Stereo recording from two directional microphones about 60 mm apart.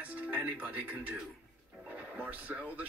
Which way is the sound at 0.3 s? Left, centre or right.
Right.